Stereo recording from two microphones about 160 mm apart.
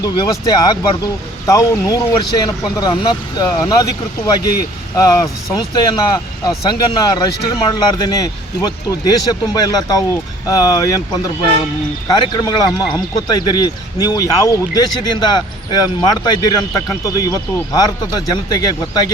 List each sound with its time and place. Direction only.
0.0 s speech: 25° left (ahead or behind)
4.9 s speech: 20° left (ahead or behind)
12.0 s speech: 25° left (ahead or behind)